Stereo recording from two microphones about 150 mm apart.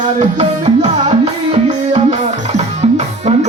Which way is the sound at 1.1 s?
45° right (ahead or behind).